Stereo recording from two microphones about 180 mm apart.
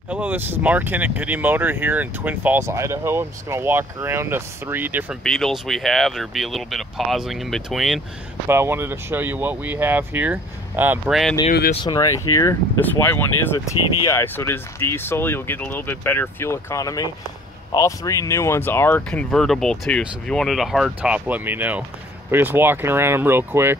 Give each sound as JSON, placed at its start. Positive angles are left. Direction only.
{"t": 0.1, "sound": "speech", "side_deg": -10}
{"t": 5.2, "sound": "speech", "side_deg": 0}
{"t": 8.5, "sound": "speech", "side_deg": -15}
{"t": 11.7, "sound": "speech", "side_deg": 25}